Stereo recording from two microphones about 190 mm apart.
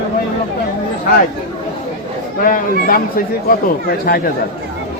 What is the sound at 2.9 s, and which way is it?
Speech, 50° left (ahead or behind).